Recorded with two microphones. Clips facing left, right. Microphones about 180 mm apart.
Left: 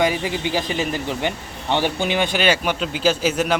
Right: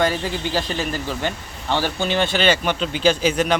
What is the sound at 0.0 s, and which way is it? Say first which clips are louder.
Speech: left 1 dB; 15° left (ahead or behind).